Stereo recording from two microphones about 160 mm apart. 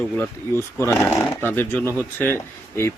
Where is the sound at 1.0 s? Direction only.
10° left (ahead or behind).